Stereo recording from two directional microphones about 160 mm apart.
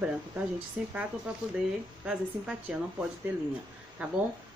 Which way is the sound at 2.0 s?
5° right (ahead or behind).